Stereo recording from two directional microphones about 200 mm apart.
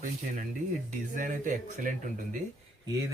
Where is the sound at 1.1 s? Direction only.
40° right (ahead or behind).